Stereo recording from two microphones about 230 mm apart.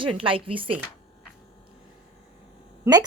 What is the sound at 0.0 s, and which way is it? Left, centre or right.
Speech, right.